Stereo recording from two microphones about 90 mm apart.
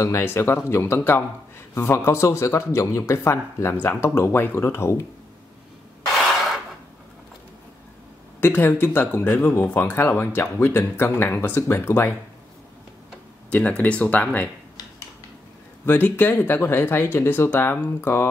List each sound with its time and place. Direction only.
0.0 s speech: 30° left (ahead or behind)
8.4 s speech: 25° left (ahead or behind)
13.5 s speech: 15° left (ahead or behind)
15.8 s speech: 20° left (ahead or behind)